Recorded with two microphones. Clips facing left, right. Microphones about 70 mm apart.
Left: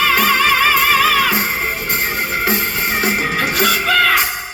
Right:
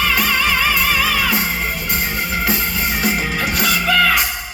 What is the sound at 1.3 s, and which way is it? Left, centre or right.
Music, left.